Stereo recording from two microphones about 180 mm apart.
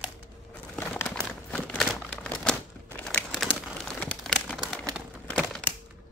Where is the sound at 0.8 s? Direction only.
10° left (ahead or behind).